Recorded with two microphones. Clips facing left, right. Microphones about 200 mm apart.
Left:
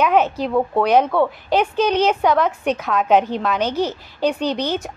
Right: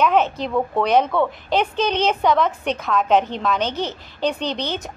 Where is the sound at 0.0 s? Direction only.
10° left (ahead or behind).